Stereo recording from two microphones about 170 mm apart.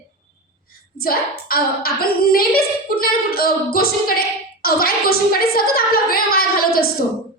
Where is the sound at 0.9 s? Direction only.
60° left (ahead or behind).